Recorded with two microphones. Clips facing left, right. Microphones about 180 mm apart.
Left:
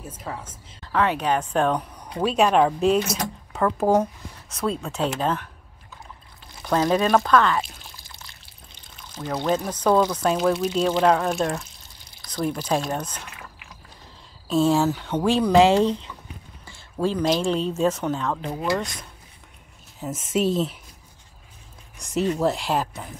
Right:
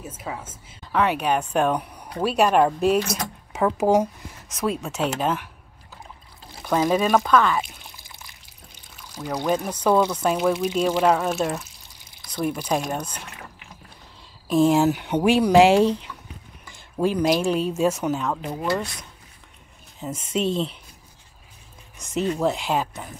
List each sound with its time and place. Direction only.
0.0 s a woman's voice: 5° right (ahead or behind)
3.5 s a woman's voice: 15° right (ahead or behind)
6.6 s speech: 5° right (ahead or behind)
7.6 s pour: 15° right (ahead or behind)
9.7 s a woman's voice: 5° right (ahead or behind)
14.5 s a woman's voice: 15° right (ahead or behind)
20.0 s speech: 5° left (ahead or behind)
21.9 s speech: centre (ahead or behind)